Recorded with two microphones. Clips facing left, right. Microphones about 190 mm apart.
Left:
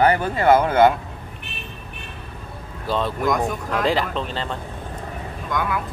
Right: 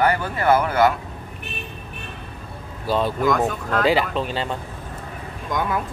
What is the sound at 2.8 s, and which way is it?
Speech, 5° right (ahead or behind).